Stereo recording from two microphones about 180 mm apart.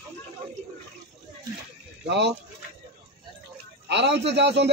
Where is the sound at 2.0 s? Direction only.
75° right (ahead or behind).